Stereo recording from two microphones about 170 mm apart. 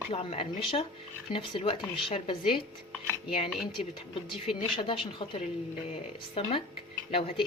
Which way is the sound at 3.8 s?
40° left (ahead or behind).